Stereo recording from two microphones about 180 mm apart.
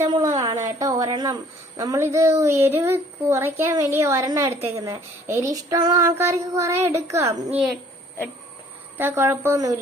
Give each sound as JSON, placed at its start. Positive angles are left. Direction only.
{"t": 0.1, "sound": "a woman's voice", "side_deg": -20}
{"t": 9.0, "sound": "a woman's voice", "side_deg": -10}